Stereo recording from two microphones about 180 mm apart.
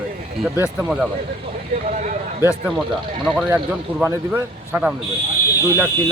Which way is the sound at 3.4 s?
10° right (ahead or behind).